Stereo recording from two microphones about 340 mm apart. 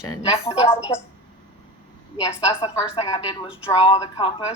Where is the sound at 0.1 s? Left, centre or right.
Centre.